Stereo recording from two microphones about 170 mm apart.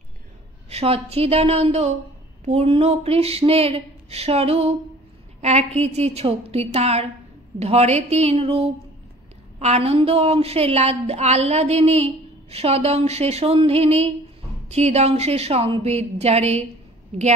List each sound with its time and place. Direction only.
0.7 s a woman's voice: 35° right (ahead or behind)